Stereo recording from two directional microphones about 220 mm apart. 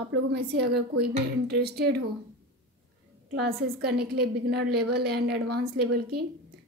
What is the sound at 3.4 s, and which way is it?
A woman's voice, 45° right (ahead or behind).